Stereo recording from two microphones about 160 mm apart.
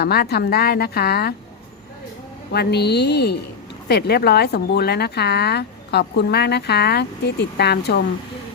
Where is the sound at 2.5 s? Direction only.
90° left.